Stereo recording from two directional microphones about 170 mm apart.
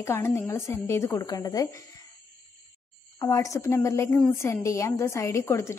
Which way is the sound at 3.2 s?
20° left (ahead or behind).